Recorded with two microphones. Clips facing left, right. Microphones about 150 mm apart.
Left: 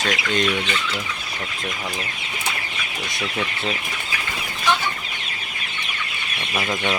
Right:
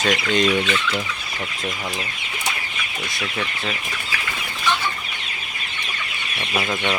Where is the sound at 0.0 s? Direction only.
Centre (ahead or behind).